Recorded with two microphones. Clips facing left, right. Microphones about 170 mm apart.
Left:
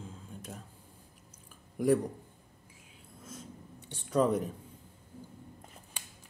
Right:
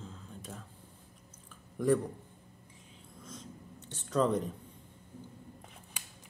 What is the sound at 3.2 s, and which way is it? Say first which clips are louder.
Writing: left 1 dB; 10° left (ahead or behind).